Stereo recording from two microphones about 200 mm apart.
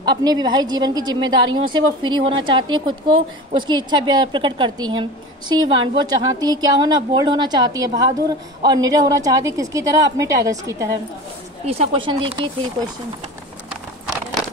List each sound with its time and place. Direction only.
0.0 s a woman's voice: 20° right (ahead or behind)
11.6 s a woman's voice: 30° right (ahead or behind)